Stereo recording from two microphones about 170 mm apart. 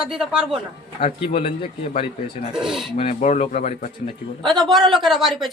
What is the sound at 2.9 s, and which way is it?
Speech, 40° left (ahead or behind).